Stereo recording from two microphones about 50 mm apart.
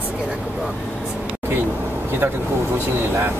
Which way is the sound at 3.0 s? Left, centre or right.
Right.